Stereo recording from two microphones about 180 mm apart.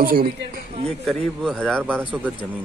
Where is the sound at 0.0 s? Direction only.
55° right (ahead or behind).